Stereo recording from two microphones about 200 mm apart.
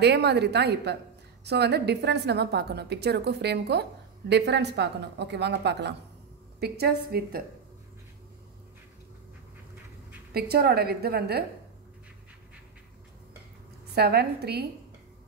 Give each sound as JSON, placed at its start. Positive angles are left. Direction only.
{"t": 0.0, "sound": "a woman's voice", "side_deg": -55}
{"t": 10.3, "sound": "a woman's voice", "side_deg": -50}
{"t": 13.9, "sound": "a woman's voice", "side_deg": -50}